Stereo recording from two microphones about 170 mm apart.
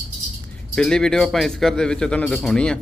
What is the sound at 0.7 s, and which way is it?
A man's voice, 5° left (ahead or behind).